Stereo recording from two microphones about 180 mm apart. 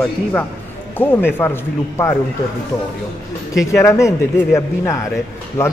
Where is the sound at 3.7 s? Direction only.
15° left (ahead or behind).